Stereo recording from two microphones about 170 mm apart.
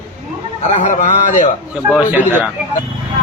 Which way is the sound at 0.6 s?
45° left (ahead or behind).